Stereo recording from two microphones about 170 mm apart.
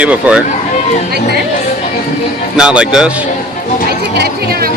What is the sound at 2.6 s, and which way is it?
Speech, 5° right (ahead or behind).